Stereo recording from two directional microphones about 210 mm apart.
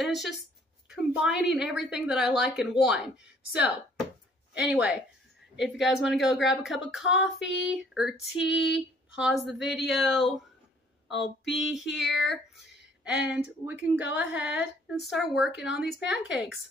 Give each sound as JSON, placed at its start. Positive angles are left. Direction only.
{"t": 0.0, "sound": "a woman's voice", "side_deg": 0}
{"t": 4.6, "sound": "a woman's voice", "side_deg": 0}